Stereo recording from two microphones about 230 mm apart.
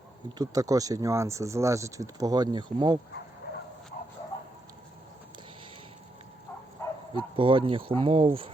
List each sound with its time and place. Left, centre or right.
0.3 s speech: centre
7.1 s speech: right